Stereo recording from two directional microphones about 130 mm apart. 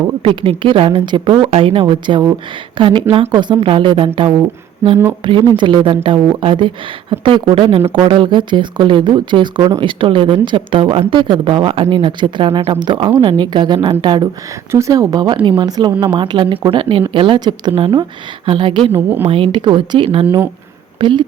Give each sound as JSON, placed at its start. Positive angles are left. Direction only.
{"t": 0.2, "sound": "a woman's voice", "side_deg": -45}
{"t": 4.8, "sound": "a woman's voice", "side_deg": -20}
{"t": 5.2, "sound": "a woman's voice", "side_deg": -40}
{"t": 14.7, "sound": "a woman's voice", "side_deg": -25}
{"t": 18.9, "sound": "a woman's voice", "side_deg": -15}
{"t": 19.3, "sound": "a woman's voice", "side_deg": -40}